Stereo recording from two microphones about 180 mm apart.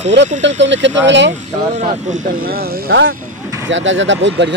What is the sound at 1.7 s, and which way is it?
Speech, 40° right (ahead or behind).